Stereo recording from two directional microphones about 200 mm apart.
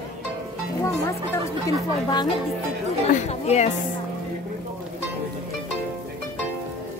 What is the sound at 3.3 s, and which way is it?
Speech, 35° left (ahead or behind).